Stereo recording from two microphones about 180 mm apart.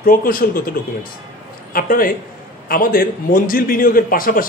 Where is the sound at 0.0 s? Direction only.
50° left (ahead or behind).